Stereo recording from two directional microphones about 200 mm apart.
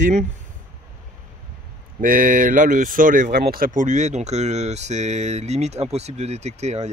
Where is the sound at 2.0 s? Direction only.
45° right (ahead or behind).